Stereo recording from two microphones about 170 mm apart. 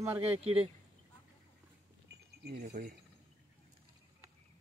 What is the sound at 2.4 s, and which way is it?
Speech, 50° right (ahead or behind).